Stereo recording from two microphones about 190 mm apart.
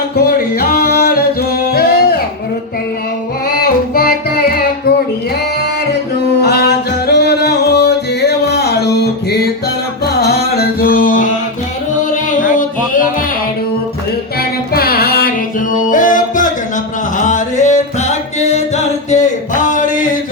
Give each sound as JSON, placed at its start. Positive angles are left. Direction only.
{"t": 0.2, "sound": "music", "side_deg": 50}
{"t": 1.7, "sound": "a sound", "side_deg": 55}
{"t": 3.5, "sound": "music", "side_deg": 55}
{"t": 6.4, "sound": "music", "side_deg": 60}
{"t": 14.7, "sound": "music", "side_deg": 55}
{"t": 19.1, "sound": "a sound", "side_deg": 40}